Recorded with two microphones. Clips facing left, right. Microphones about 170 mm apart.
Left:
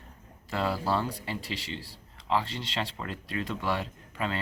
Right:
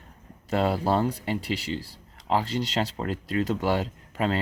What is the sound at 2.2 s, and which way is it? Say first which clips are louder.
Speech: right 4 dB; 40° right (ahead or behind).